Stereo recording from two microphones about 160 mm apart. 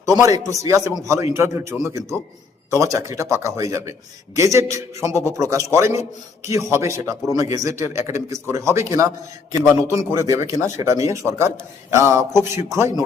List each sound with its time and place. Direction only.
0.2 s a man's voice: 20° right (ahead or behind)